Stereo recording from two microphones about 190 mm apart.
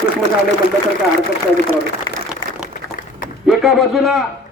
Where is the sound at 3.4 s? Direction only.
Centre (ahead or behind).